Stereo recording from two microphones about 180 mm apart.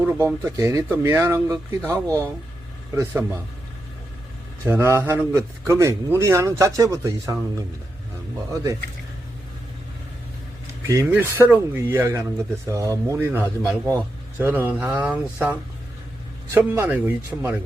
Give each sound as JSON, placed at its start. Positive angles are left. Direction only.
{"t": 0.0, "sound": "speech", "side_deg": -10}
{"t": 4.6, "sound": "speech", "side_deg": -15}
{"t": 10.8, "sound": "speech", "side_deg": -15}
{"t": 16.6, "sound": "speech", "side_deg": -10}